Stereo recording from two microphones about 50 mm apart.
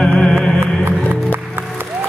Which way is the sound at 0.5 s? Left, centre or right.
Right.